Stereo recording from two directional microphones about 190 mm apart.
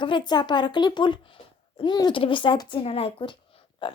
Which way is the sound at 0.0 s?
25° left (ahead or behind).